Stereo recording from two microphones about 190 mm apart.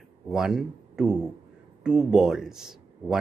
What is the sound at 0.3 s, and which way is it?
Speech, 5° right (ahead or behind).